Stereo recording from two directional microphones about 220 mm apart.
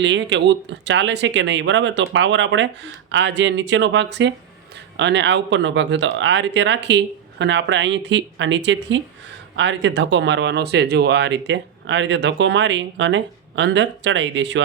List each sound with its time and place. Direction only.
0.0 s speech: 55° right (ahead or behind)